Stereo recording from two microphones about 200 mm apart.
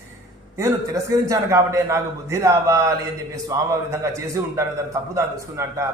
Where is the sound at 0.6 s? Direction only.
15° right (ahead or behind).